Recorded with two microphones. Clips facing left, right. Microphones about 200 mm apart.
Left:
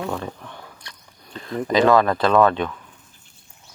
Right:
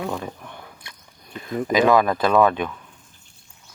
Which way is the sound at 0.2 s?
15° right (ahead or behind).